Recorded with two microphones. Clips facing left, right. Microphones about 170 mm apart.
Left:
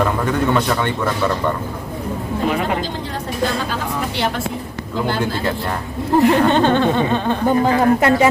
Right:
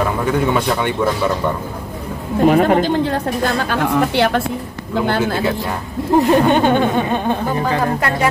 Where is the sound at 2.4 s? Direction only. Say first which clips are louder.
Right 8 dB; 50° right (ahead or behind).